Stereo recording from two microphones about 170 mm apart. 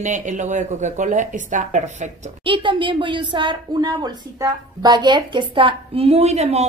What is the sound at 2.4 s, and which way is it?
A woman's voice, 30° right (ahead or behind).